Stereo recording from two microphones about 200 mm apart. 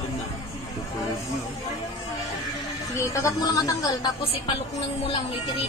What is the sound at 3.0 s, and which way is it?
Speech, 15° left (ahead or behind).